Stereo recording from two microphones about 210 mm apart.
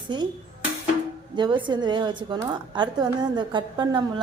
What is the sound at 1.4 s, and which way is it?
A woman's voice, 20° right (ahead or behind).